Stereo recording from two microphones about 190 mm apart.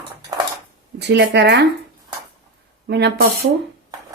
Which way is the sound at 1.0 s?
65° right (ahead or behind).